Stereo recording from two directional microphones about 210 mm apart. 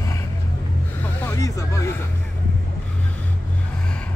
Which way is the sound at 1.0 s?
10° left (ahead or behind).